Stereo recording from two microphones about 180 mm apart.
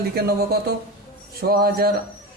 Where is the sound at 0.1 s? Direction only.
60° right (ahead or behind).